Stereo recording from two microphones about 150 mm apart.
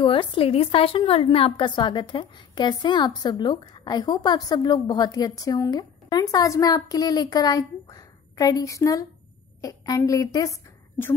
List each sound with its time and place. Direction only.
0.0 s a woman's voice: 35° left (ahead or behind); by 11.1 s 20° left (ahead or behind)